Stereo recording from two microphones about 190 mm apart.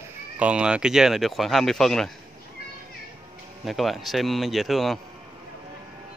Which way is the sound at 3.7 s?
Centre (ahead or behind).